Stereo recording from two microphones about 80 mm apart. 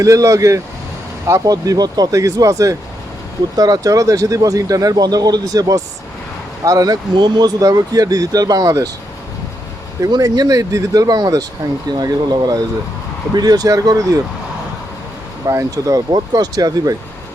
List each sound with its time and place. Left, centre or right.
0.0 s speech: right
10.2 s speech: right
15.4 s speech: right